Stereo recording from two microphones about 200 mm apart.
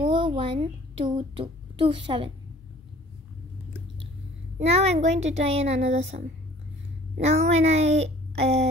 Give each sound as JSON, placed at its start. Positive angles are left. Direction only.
{"t": 0.2, "sound": "a child's voice", "side_deg": -25}
{"t": 4.6, "sound": "a child's voice", "side_deg": -30}
{"t": 7.2, "sound": "a child's voice", "side_deg": -35}